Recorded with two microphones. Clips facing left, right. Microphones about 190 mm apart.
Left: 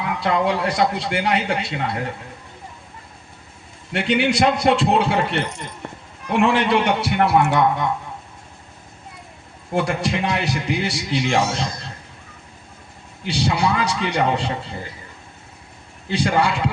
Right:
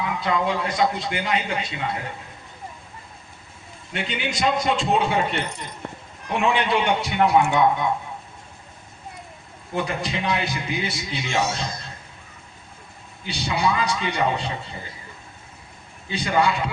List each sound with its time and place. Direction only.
0.0 s speech: 65° left (ahead or behind)
3.9 s speech: 75° left (ahead or behind)
9.7 s speech: 75° left (ahead or behind)
13.2 s speech: 75° left (ahead or behind)
16.0 s speech: 70° left (ahead or behind)